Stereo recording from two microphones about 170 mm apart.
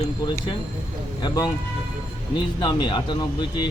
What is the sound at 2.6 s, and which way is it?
Speech, 25° left (ahead or behind).